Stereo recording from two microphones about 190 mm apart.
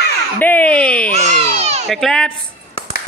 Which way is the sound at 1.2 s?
35° right (ahead or behind).